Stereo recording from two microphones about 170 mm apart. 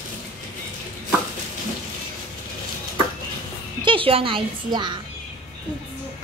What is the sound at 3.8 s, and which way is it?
A woman's voice, 30° right (ahead or behind).